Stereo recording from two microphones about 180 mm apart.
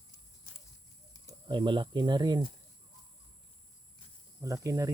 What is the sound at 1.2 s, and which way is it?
Speech, 25° right (ahead or behind).